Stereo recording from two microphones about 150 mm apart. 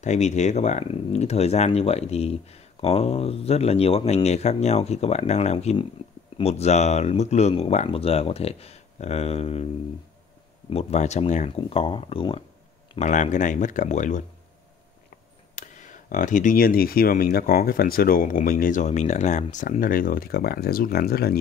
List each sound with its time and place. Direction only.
0.0 s speech: 50° left (ahead or behind)
10.7 s speech: 45° left (ahead or behind)
11.5 s speech: 40° left (ahead or behind)
13.0 s speech: 55° left (ahead or behind)
15.5 s speech: 55° left (ahead or behind); by 21.4 s 90° left